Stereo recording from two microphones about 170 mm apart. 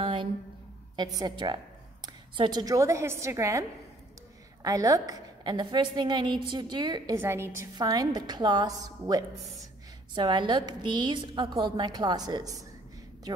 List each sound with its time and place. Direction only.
0.0 s a sound: 30° right (ahead or behind)
0.9 s a woman's voice: 25° right (ahead or behind)
4.6 s a woman's voice: 20° right (ahead or behind)
7.2 s a woman's voice: 15° right (ahead or behind)